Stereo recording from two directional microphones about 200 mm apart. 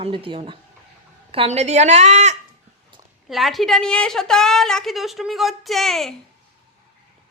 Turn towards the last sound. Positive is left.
turn(degrees=0)  # may be behind; listen again after turning